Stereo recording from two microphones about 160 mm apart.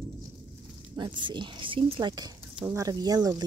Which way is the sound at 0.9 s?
30° right (ahead or behind).